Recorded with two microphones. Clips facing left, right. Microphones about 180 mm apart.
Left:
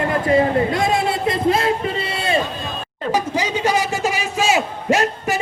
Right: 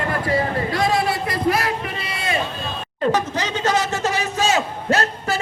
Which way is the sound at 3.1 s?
10° left (ahead or behind).